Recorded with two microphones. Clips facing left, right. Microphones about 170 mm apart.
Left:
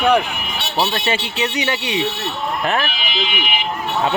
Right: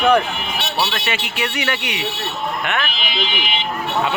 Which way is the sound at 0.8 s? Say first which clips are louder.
Left 4 dB; 30° left (ahead or behind).